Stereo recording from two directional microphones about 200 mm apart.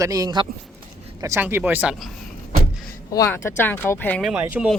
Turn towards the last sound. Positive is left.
turn(degrees=-5)  # may be behind; listen again after turning